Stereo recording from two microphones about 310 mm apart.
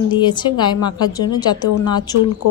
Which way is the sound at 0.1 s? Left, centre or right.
Centre.